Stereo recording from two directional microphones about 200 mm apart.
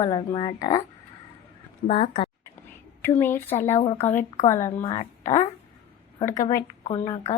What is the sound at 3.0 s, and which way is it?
Speech, 10° left (ahead or behind).